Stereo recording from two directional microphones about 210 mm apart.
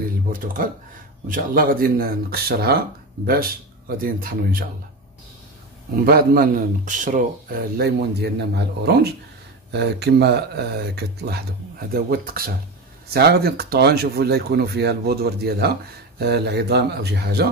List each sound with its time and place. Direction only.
0.3 s a man's voice: 40° right (ahead or behind)
6.0 s a man's voice: 45° right (ahead or behind)
7.7 s speech: 50° right (ahead or behind)